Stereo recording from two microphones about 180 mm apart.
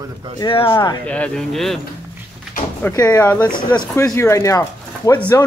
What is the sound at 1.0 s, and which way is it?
Speech, 5° left (ahead or behind).